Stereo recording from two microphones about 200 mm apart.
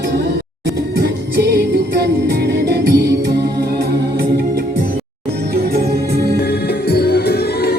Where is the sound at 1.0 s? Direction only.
55° right (ahead or behind).